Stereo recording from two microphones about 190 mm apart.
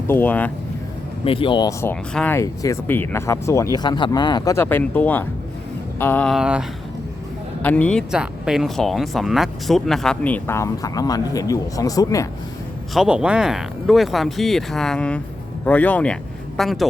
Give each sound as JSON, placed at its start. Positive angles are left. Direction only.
{"t": 0.1, "sound": "speech", "side_deg": 10}
{"t": 1.2, "sound": "speech", "side_deg": 30}
{"t": 1.8, "sound": "speech", "side_deg": 10}
{"t": 7.6, "sound": "speech", "side_deg": 10}
{"t": 12.9, "sound": "speech", "side_deg": -5}